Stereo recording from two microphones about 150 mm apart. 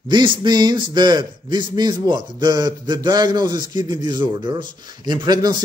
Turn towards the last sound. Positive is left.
turn(degrees=-25)  # may be behind; listen again after turning